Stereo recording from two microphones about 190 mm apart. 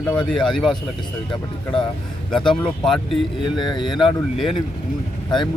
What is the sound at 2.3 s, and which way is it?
Speech, 5° left (ahead or behind).